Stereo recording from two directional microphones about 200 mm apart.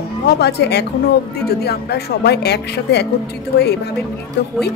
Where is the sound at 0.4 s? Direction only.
55° left (ahead or behind).